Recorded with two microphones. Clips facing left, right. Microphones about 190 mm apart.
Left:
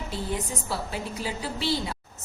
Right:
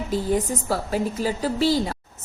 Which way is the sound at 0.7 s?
45° right (ahead or behind).